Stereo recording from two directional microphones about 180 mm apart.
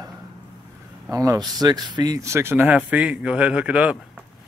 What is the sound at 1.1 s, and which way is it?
Speech, 15° right (ahead or behind).